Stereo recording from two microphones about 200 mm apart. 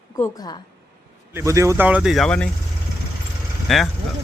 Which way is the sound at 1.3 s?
15° right (ahead or behind).